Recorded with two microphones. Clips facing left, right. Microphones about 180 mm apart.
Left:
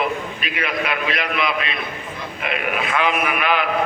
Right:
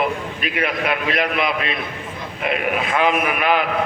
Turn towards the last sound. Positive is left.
turn(degrees=-45)  # may be behind; listen again after turning